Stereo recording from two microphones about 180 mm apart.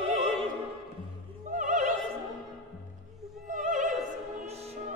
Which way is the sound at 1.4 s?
45° right (ahead or behind).